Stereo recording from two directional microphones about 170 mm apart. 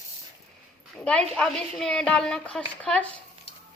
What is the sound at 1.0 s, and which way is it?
A woman's voice, 5° left (ahead or behind).